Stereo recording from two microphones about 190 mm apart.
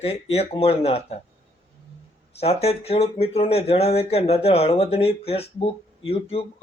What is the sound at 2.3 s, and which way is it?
A man's voice, 30° left (ahead or behind).